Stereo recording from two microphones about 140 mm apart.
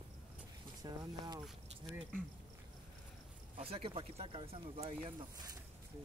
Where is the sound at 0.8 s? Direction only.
30° right (ahead or behind).